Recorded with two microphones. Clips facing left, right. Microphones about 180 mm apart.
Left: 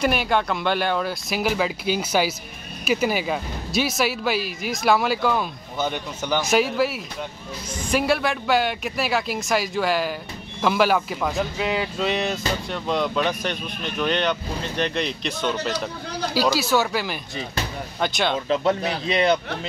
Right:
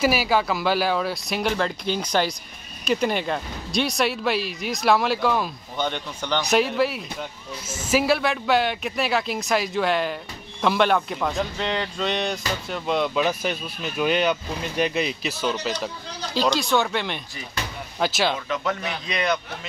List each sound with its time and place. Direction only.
0.0 s speech: 5° right (ahead or behind)
18.5 s a man's voice: 30° left (ahead or behind)